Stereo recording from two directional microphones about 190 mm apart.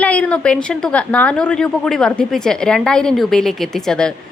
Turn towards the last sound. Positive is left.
turn(degrees=5)  # may be behind; listen again after turning